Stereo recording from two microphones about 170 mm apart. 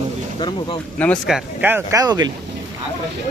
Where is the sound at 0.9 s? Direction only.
10° left (ahead or behind).